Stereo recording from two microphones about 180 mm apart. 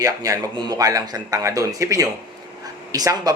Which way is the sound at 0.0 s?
20° right (ahead or behind).